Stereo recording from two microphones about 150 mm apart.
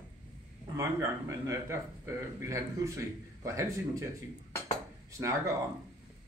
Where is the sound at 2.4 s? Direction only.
20° right (ahead or behind).